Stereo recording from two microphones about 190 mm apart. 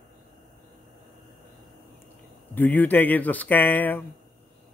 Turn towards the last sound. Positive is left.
turn(degrees=10)  # may be behind; listen again after turning